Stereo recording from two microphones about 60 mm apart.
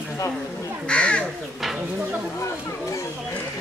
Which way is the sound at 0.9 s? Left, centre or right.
Centre.